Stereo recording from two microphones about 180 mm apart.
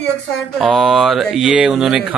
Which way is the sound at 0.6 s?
Centre (ahead or behind).